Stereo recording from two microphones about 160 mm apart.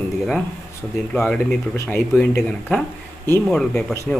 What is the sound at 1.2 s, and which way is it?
Speech, 10° left (ahead or behind).